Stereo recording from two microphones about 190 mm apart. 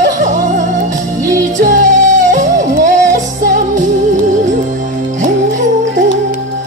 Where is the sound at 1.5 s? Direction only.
40° right (ahead or behind).